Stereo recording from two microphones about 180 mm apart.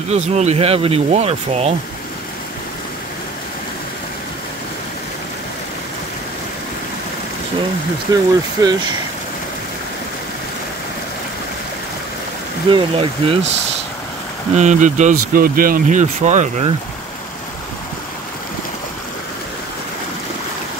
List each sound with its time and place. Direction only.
0.1 s speech: 40° right (ahead or behind)
8.1 s speech: 20° right (ahead or behind)
12.7 s speech: 30° right (ahead or behind)
14.5 s speech: 40° right (ahead or behind)